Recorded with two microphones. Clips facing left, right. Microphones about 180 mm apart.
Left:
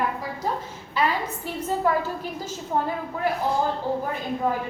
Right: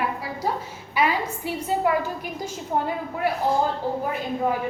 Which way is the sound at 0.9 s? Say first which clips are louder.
Right 1 dB; 10° right (ahead or behind).